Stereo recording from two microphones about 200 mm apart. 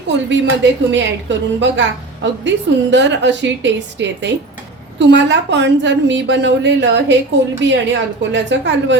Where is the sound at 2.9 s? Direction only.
65° right (ahead or behind).